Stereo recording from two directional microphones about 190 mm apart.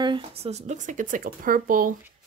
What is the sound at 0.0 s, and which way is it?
Speech, 25° right (ahead or behind).